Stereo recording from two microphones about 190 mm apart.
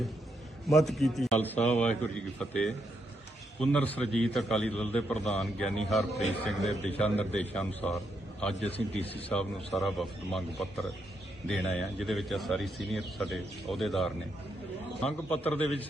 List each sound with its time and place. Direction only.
0.9 s a man's voice: centre (ahead or behind)
8.6 s a man's voice: 30° left (ahead or behind)
9.1 s a man's voice: 5° left (ahead or behind)